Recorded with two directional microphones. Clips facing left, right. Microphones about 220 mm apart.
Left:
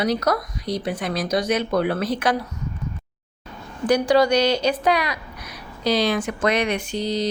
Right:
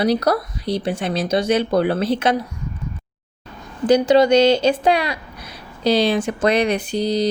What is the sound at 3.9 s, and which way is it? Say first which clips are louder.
Speech: right 4 dB; 20° right (ahead or behind).